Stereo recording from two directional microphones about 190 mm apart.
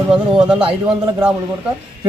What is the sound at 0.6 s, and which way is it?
Speech, 25° right (ahead or behind).